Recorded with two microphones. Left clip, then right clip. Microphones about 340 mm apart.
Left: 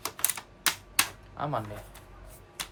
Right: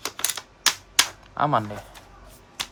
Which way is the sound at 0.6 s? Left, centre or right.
Right.